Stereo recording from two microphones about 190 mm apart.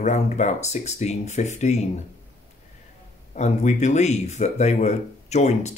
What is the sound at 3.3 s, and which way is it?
Speech, 40° left (ahead or behind).